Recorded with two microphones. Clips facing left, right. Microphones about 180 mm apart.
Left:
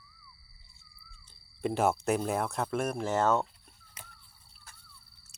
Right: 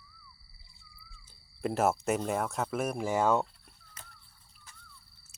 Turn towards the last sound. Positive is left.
turn(degrees=-10)  # may be behind; listen again after turning